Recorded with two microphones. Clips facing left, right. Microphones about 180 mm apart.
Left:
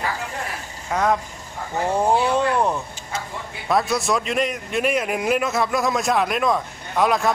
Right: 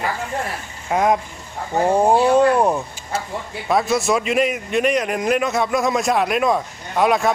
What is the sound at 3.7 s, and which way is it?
A man's voice, centre (ahead or behind).